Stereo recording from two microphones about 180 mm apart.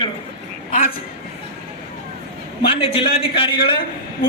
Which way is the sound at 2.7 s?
30° left (ahead or behind).